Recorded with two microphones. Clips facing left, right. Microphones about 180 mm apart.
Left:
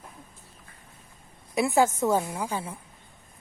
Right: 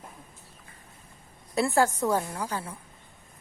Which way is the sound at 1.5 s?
20° left (ahead or behind).